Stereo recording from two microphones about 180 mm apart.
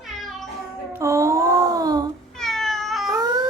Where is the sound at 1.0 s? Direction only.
15° right (ahead or behind).